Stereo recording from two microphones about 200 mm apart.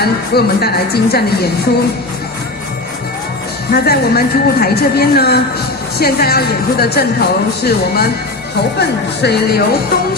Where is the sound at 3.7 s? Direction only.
50° left (ahead or behind).